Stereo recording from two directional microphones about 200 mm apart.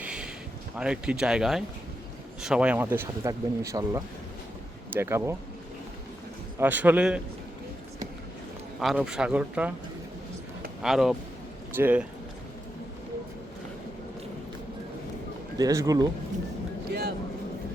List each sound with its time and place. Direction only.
0.0 s a sound: 5° right (ahead or behind)
0.8 s speech: 5° right (ahead or behind)
6.6 s speech: 10° right (ahead or behind)
8.8 s speech: centre (ahead or behind)
10.8 s speech: centre (ahead or behind)
15.5 s speech: 15° right (ahead or behind)